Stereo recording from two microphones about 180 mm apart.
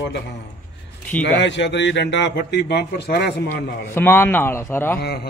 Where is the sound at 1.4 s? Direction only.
80° left; by 3.4 s 65° left (ahead or behind).